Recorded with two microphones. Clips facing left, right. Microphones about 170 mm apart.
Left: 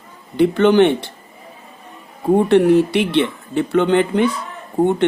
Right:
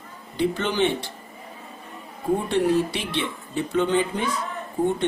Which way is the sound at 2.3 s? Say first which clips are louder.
Left 10 dB; 65° left (ahead or behind).